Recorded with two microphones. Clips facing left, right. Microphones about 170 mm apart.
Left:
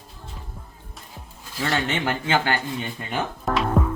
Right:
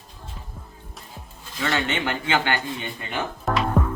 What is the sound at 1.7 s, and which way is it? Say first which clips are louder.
Speech: left 1 dB; 40° left (ahead or behind).